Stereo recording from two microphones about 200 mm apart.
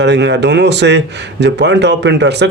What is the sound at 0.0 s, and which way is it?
A man's voice, 60° right (ahead or behind).